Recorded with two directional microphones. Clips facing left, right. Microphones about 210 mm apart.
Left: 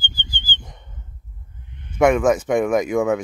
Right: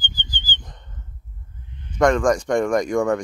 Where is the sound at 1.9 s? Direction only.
10° left (ahead or behind).